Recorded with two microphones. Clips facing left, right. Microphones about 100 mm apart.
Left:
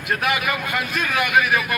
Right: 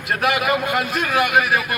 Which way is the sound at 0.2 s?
30° right (ahead or behind).